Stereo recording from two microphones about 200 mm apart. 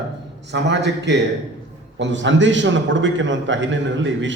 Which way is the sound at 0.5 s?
60° right (ahead or behind).